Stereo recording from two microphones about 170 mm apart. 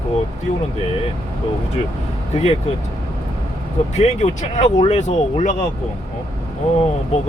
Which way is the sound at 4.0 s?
40° left (ahead or behind).